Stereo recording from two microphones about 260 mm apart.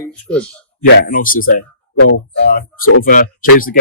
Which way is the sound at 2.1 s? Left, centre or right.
Left.